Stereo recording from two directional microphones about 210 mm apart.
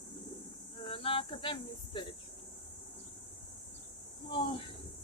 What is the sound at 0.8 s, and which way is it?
Speech, 25° left (ahead or behind).